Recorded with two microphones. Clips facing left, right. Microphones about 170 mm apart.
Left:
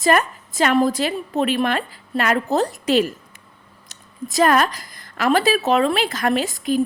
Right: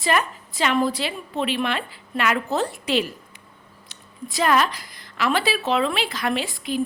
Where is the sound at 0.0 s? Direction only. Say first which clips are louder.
Left 5 dB; 45° left (ahead or behind).